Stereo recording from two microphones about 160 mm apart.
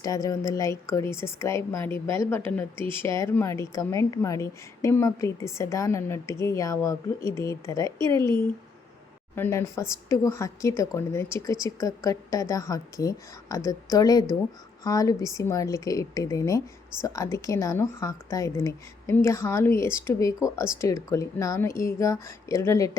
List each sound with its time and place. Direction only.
0.0 s speech: 20° left (ahead or behind)
9.3 s speech: 15° left (ahead or behind)